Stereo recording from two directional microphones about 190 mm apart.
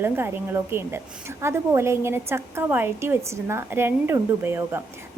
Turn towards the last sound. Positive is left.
turn(degrees=-10)  # may be behind; listen again after turning